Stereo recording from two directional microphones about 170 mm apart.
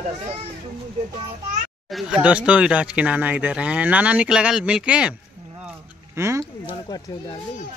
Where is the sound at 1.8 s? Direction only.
Centre (ahead or behind).